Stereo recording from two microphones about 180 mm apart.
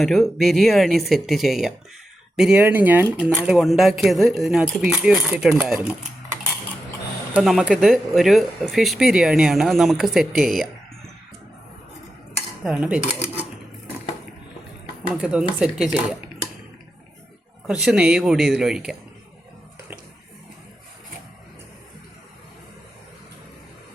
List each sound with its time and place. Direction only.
0.0 s speech: centre (ahead or behind)
7.3 s speech: centre (ahead or behind)
10.4 s speech: 50° right (ahead or behind)
12.6 s speech: 5° right (ahead or behind)
15.1 s speech: 5° right (ahead or behind)
17.7 s speech: 5° right (ahead or behind)